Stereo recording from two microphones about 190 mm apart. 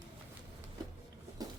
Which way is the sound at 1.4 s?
20° right (ahead or behind).